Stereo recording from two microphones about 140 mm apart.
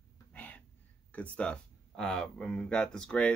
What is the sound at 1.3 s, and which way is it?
Speech, 5° left (ahead or behind).